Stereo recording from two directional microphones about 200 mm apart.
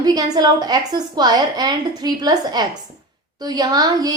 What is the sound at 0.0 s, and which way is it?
A woman's voice, 20° right (ahead or behind).